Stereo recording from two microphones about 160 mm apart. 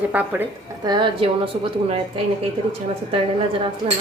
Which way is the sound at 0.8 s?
30° right (ahead or behind).